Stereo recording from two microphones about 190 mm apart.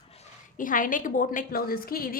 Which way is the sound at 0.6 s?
45° left (ahead or behind).